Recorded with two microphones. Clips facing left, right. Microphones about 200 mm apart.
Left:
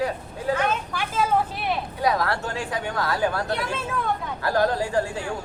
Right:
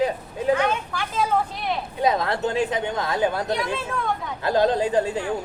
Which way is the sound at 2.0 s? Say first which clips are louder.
Right 3 dB; 20° right (ahead or behind).